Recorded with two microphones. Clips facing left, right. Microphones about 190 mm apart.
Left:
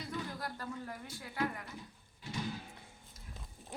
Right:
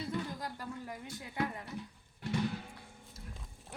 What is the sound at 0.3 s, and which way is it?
Speech, 15° right (ahead or behind).